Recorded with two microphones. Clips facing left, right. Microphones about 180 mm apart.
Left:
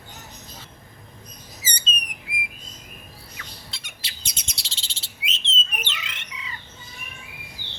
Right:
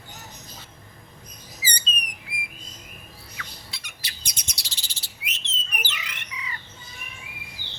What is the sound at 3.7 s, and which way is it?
Chirp, 25° left (ahead or behind).